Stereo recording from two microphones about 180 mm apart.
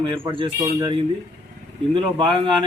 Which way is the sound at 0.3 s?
25° right (ahead or behind).